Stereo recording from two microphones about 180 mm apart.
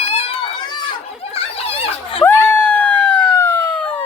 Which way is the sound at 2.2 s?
10° left (ahead or behind).